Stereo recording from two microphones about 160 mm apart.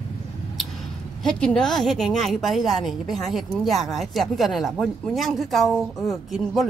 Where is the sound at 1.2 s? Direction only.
5° left (ahead or behind).